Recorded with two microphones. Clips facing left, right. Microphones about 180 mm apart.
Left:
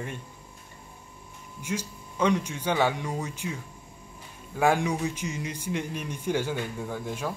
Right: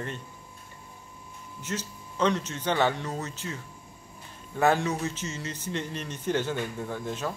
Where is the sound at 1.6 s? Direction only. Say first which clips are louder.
Left 2 dB; 10° left (ahead or behind).